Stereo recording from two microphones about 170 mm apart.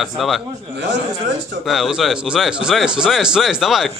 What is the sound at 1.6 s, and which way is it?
Speech, centre (ahead or behind).